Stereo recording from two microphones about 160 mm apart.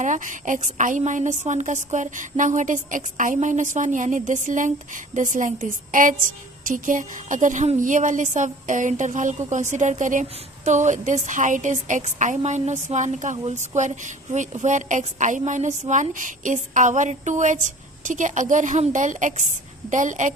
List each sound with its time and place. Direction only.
0.0 s a woman's voice: 55° right (ahead or behind)